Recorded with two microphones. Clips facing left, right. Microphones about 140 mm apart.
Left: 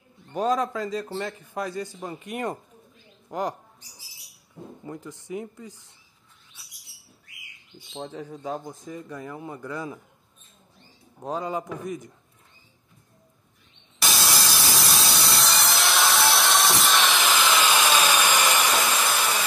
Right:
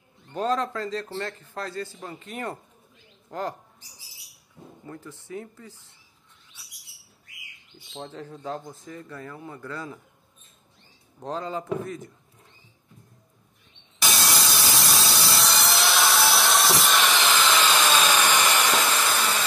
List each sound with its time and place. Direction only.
0.3 s speech: 10° left (ahead or behind)
4.8 s speech: 15° left (ahead or behind)
8.0 s speech: 10° left (ahead or behind)
11.2 s speech: 10° left (ahead or behind)
14.0 s wood: centre (ahead or behind)
18.5 s sawing: 10° left (ahead or behind)